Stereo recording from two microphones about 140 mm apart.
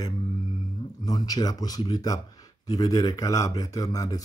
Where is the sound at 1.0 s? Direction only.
25° left (ahead or behind).